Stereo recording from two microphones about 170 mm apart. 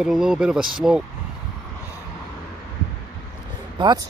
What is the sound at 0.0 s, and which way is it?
Speech, 5° right (ahead or behind).